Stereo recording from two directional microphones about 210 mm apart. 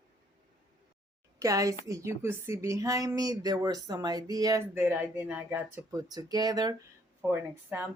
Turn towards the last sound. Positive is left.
turn(degrees=-10)  # may be behind; listen again after turning